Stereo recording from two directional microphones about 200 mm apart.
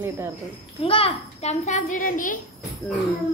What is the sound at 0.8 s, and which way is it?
A child's voice, 30° left (ahead or behind).